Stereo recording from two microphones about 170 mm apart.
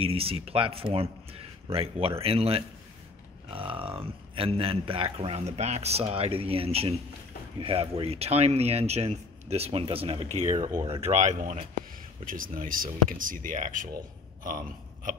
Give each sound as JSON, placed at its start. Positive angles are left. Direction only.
{"t": 0.0, "sound": "a man's voice", "side_deg": -35}
{"t": 12.3, "sound": "speech", "side_deg": -55}